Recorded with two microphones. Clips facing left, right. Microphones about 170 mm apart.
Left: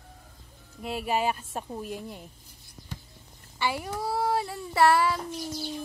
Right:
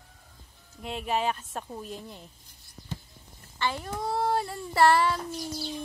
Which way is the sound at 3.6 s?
10° left (ahead or behind).